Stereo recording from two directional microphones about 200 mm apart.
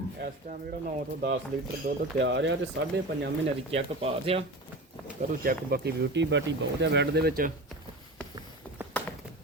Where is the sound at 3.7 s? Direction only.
30° right (ahead or behind).